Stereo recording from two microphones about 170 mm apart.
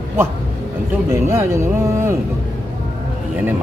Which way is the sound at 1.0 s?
15° right (ahead or behind).